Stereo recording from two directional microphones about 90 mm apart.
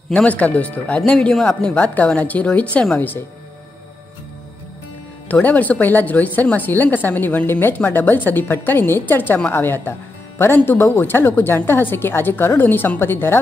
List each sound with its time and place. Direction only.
0.3 s a woman's voice: 15° left (ahead or behind)
3.0 s speech: 20° left (ahead or behind)
5.3 s speech: 15° left (ahead or behind)